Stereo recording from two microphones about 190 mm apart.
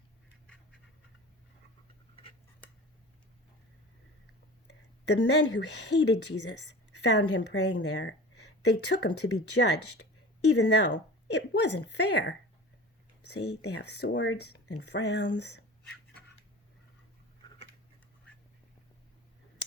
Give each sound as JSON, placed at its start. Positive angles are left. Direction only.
{"t": 0.4, "sound": "pant", "side_deg": 5}
{"t": 5.0, "sound": "speech", "side_deg": 65}
{"t": 10.5, "sound": "speech", "side_deg": 65}
{"t": 13.3, "sound": "speech", "side_deg": 60}